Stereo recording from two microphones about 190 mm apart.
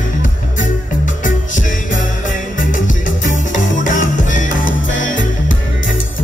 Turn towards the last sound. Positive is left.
turn(degrees=90)